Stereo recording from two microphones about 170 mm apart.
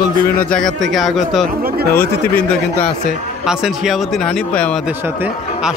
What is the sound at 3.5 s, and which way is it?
A man's voice, centre (ahead or behind).